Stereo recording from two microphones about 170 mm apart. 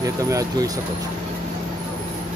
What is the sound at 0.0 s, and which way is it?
Speech, 20° right (ahead or behind).